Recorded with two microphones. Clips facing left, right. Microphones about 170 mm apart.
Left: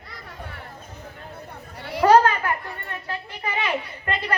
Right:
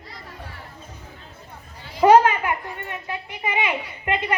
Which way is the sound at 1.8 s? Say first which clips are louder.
Right 2 dB; 65° left (ahead or behind).